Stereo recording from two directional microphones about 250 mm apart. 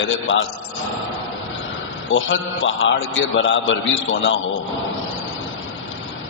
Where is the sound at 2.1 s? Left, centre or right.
Left.